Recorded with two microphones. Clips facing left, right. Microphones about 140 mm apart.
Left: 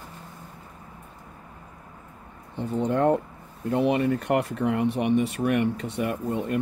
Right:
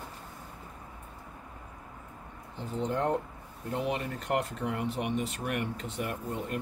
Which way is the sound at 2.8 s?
65° left (ahead or behind).